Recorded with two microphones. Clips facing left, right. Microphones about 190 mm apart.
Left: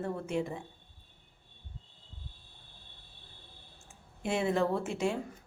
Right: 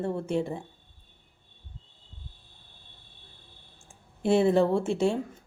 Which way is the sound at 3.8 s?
30° right (ahead or behind).